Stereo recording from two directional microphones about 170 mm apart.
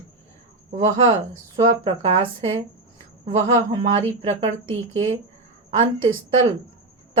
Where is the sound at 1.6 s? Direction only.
30° right (ahead or behind).